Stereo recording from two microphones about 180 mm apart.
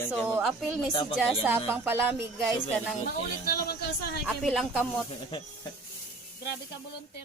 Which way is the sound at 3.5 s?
60° left (ahead or behind).